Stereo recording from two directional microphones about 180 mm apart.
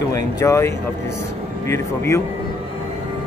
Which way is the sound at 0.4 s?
15° left (ahead or behind).